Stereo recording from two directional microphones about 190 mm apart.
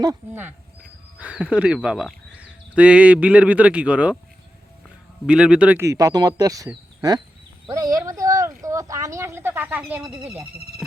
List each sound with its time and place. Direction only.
0.0 s speech: 15° right (ahead or behind)
5.2 s speech: 5° right (ahead or behind)
7.7 s a sound: 20° right (ahead or behind)